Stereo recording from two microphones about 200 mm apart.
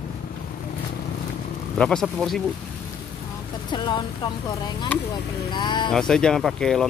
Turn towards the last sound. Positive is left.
turn(degrees=0)  # may be behind; listen again after turning